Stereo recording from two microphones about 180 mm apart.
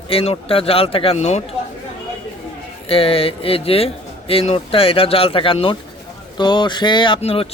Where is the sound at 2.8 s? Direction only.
30° left (ahead or behind).